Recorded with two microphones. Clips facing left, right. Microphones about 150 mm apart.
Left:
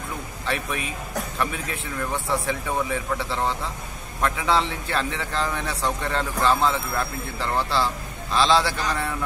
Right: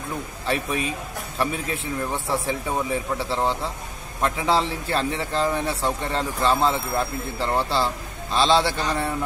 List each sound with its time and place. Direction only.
0.5 s a man's voice: 30° right (ahead or behind)
2.1 s speech: centre (ahead or behind)
2.4 s a man's voice: 30° right (ahead or behind)
7.5 s a man's voice: centre (ahead or behind)
8.5 s speech: 25° right (ahead or behind)